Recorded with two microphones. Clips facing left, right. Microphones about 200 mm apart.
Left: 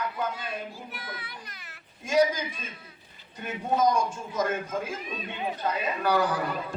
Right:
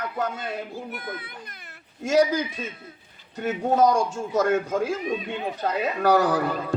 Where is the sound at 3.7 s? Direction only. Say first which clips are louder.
Right 4 dB; 75° right (ahead or behind).